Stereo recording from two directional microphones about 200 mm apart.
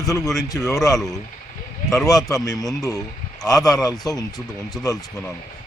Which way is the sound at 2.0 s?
15° left (ahead or behind).